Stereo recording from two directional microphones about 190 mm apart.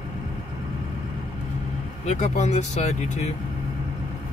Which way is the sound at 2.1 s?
35° left (ahead or behind).